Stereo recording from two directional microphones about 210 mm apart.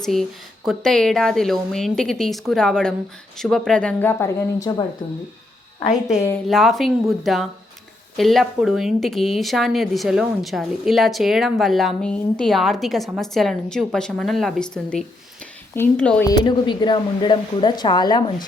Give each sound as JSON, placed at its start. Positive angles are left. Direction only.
{"t": 0.0, "sound": "a woman's voice", "side_deg": 0}
{"t": 5.8, "sound": "a woman's voice", "side_deg": 35}
{"t": 6.2, "sound": "a woman's voice", "side_deg": 5}
{"t": 16.3, "sound": "speech", "side_deg": 20}